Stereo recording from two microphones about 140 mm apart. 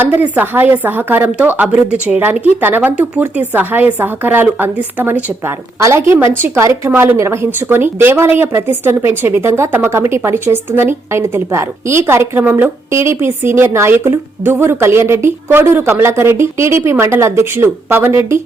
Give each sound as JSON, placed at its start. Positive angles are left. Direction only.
{"t": 0.0, "sound": "a woman's voice", "side_deg": -15}